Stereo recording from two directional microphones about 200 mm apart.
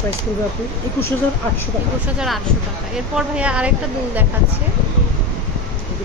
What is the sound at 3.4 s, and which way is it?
Speech, 5° right (ahead or behind).